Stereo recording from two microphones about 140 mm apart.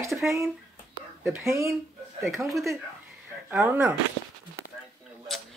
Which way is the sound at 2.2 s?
Centre (ahead or behind).